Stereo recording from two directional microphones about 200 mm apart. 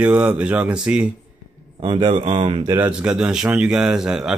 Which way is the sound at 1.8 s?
25° right (ahead or behind).